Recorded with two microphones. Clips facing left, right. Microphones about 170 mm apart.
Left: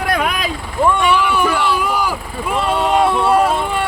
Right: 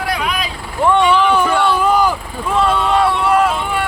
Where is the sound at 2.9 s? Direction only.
25° left (ahead or behind).